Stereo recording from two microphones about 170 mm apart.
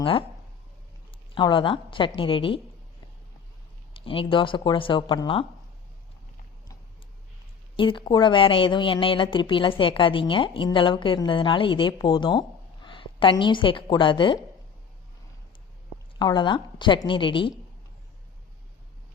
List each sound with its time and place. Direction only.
0.0 s speech: 30° left (ahead or behind)
1.4 s a woman's voice: 30° left (ahead or behind)
3.9 s a woman's voice: 30° left (ahead or behind)
7.8 s a woman's voice: 30° left (ahead or behind)
16.1 s a woman's voice: 25° left (ahead or behind)